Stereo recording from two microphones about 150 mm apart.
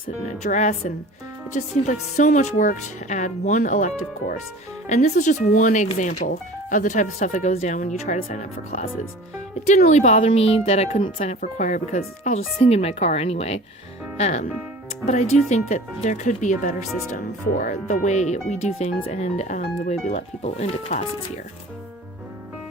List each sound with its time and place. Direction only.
0.4 s speech: 55° left (ahead or behind)